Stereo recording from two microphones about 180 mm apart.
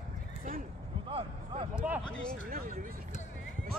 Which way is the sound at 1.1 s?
30° right (ahead or behind).